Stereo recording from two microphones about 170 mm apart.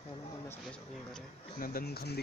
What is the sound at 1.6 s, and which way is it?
Speech, 65° left (ahead or behind).